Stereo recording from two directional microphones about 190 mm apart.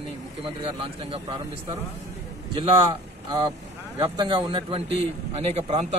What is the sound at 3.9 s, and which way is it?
A man's voice, 20° right (ahead or behind).